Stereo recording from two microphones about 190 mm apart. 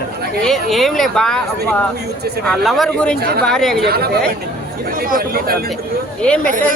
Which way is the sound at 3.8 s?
55° right (ahead or behind).